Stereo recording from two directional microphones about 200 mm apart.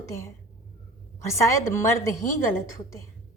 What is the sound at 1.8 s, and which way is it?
A woman's voice, 15° left (ahead or behind).